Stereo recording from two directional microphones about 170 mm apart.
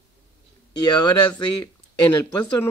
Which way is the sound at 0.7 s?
25° left (ahead or behind).